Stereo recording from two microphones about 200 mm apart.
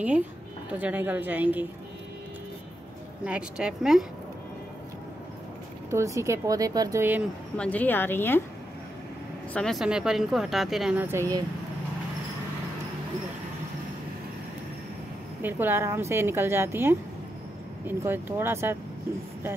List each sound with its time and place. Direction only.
0.7 s a woman's voice: 10° right (ahead or behind)
3.3 s speech: 5° right (ahead or behind)
5.9 s a woman's voice: 15° right (ahead or behind)
7.5 s speech: 5° left (ahead or behind)
9.5 s speech: 5° left (ahead or behind); by 11.4 s 15° right (ahead or behind)
15.4 s a woman's voice: 10° right (ahead or behind)